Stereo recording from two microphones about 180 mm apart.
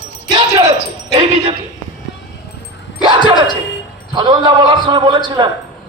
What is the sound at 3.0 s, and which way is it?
A man's voice, 25° right (ahead or behind).